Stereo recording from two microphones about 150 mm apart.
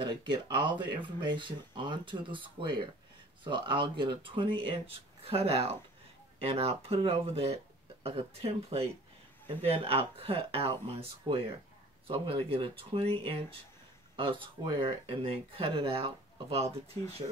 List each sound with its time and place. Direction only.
0.0 s speech: 30° right (ahead or behind)